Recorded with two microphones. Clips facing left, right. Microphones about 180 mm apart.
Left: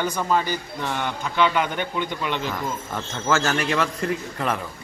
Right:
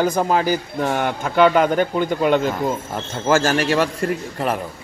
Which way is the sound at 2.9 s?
30° right (ahead or behind).